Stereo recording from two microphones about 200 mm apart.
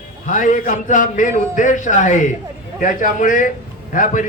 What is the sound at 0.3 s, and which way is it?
A man's voice, 40° left (ahead or behind).